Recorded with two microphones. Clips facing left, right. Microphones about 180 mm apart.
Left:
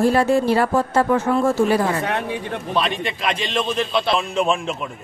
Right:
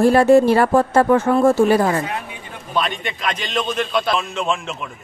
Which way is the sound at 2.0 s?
70° left (ahead or behind).